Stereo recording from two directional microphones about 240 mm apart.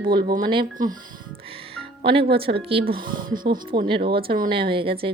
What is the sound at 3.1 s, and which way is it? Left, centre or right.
Speech, right.